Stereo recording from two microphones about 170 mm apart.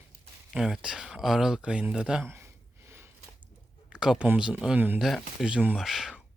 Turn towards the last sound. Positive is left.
turn(degrees=0)  # may be behind; listen again after turning